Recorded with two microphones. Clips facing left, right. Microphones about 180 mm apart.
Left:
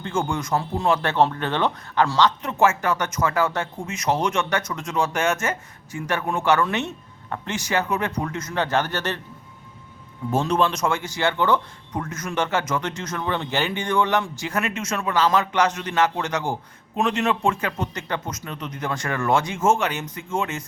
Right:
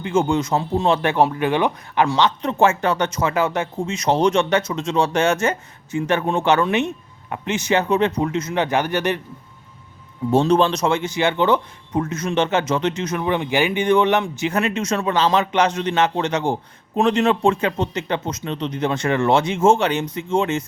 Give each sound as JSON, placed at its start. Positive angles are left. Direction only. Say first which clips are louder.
{"t": 0.0, "sound": "speech", "louder": "right 6 dB", "side_deg": -20}
{"t": 1.1, "sound": "speech", "louder": "right 3 dB", "side_deg": -10}
{"t": 2.4, "sound": "speech", "louder": "right 3 dB", "side_deg": -30}
{"t": 3.9, "sound": "speech", "louder": "right 5 dB", "side_deg": -35}
{"t": 4.5, "sound": "speech", "louder": "right 5 dB", "side_deg": -25}
{"t": 10.3, "sound": "speech", "louder": "right 5 dB", "side_deg": -30}